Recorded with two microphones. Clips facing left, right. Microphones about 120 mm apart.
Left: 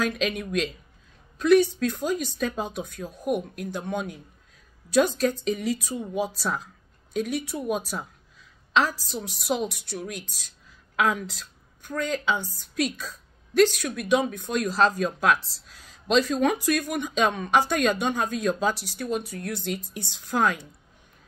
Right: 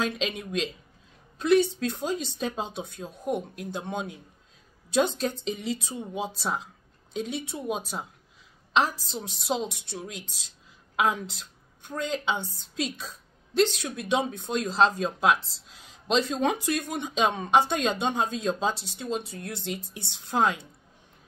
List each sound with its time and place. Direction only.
0.0 s a woman's voice: 25° right (ahead or behind)